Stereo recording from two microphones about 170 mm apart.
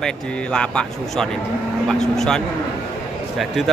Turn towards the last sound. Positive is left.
turn(degrees=0)  # may be behind; listen again after turning